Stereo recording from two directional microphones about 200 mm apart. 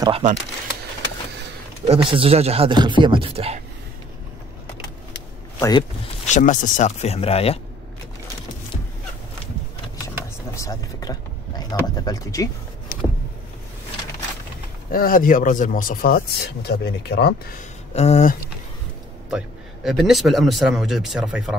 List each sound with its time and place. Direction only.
0.2 s speech: 35° right (ahead or behind)
1.9 s speech: 25° right (ahead or behind)
5.6 s a man's voice: 20° left (ahead or behind)
6.2 s speech: 35° left (ahead or behind)
10.5 s a sound: 15° left (ahead or behind)
14.9 s speech: 45° left (ahead or behind)
17.6 s speech: 35° left (ahead or behind)
19.3 s speech: centre (ahead or behind)